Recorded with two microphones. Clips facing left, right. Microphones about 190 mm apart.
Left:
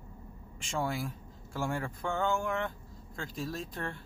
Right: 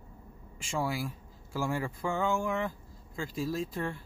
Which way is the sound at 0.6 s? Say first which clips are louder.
Right 1 dB; centre (ahead or behind).